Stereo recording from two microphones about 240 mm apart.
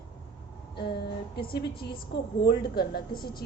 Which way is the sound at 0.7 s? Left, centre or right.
Left.